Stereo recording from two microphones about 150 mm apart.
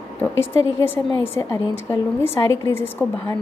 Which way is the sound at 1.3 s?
15° left (ahead or behind).